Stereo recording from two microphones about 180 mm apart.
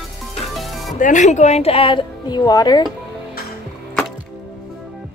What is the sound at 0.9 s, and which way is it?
A woman's voice, 45° left (ahead or behind).